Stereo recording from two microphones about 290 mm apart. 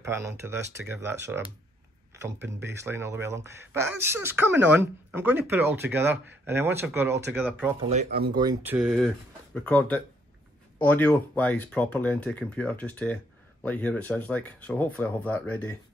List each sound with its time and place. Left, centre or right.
0.0 s speech: centre
7.9 s speech: right
8.4 s speech: centre
8.7 s speech: centre